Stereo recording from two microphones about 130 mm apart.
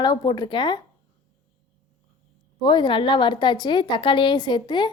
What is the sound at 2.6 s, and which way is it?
A woman's voice, 35° left (ahead or behind).